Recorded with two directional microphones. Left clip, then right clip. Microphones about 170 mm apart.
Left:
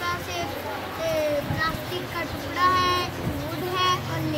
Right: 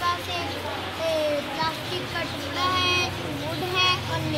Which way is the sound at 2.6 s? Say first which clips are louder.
Left 2 dB; 5° left (ahead or behind).